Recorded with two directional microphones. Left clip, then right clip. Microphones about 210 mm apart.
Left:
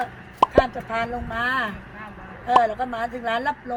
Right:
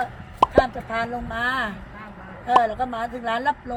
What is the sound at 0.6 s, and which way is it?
Speech, 10° left (ahead or behind).